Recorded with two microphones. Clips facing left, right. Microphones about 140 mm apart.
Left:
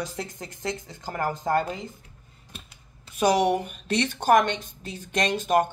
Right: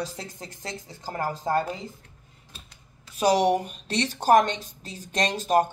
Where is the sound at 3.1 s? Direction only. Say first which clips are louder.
Even; 35° right (ahead or behind).